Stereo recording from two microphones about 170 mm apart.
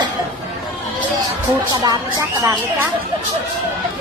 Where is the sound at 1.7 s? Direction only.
20° right (ahead or behind).